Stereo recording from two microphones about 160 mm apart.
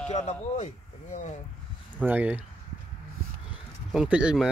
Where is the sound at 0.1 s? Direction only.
45° left (ahead or behind).